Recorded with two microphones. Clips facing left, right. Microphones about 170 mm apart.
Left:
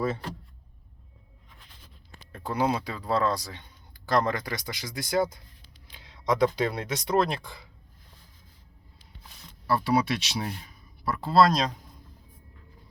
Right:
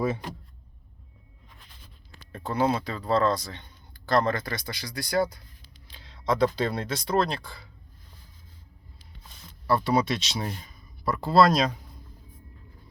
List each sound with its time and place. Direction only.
0.0 s speech: 15° right (ahead or behind)
2.3 s speech: 10° left (ahead or behind)
9.6 s speech: 5° left (ahead or behind)